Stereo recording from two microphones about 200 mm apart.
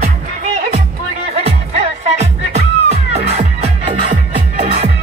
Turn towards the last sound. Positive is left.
turn(degrees=-30)  # may be behind; listen again after turning